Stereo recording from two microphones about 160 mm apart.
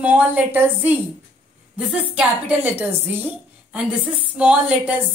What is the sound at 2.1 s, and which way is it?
A woman's voice, 10° right (ahead or behind).